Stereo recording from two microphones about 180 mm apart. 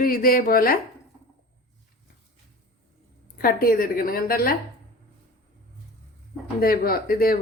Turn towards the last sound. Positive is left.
turn(degrees=55)  # may be behind; listen again after turning